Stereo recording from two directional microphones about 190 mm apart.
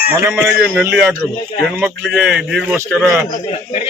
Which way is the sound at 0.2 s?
10° right (ahead or behind).